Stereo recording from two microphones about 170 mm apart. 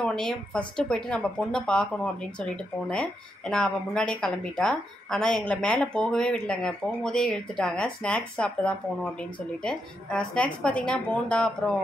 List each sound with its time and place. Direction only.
0.0 s speech: 5° left (ahead or behind)